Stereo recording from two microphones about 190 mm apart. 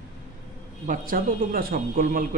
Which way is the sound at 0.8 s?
45° right (ahead or behind).